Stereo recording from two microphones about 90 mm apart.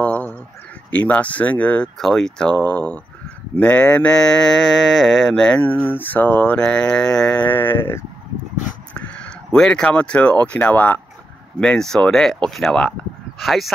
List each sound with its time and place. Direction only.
0.0 s a sound: 15° left (ahead or behind)
0.8 s mantra: 15° left (ahead or behind)
5.6 s mantra: 20° left (ahead or behind)
7.4 s speech: 20° left (ahead or behind)
8.9 s speech: 15° left (ahead or behind)
11.6 s mantra: 5° left (ahead or behind)
13.4 s speech: centre (ahead or behind)